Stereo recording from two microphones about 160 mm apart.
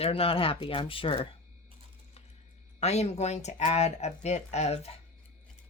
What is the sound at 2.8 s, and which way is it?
Speech, 45° left (ahead or behind).